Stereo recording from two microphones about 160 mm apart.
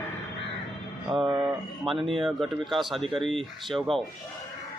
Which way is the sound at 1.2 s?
30° right (ahead or behind).